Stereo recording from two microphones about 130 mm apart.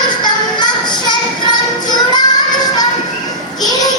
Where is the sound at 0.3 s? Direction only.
35° left (ahead or behind).